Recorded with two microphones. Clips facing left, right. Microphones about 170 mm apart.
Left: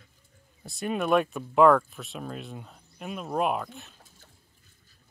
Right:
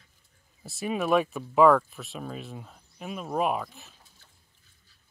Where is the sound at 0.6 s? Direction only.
Centre (ahead or behind).